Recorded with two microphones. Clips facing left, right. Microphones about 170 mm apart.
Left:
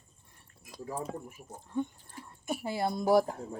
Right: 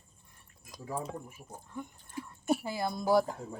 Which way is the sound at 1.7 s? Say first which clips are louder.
Left 8 dB; 30° left (ahead or behind).